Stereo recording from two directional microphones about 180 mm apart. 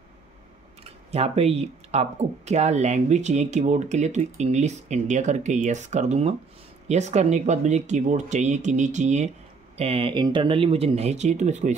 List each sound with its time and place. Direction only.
1.1 s speech: 35° right (ahead or behind)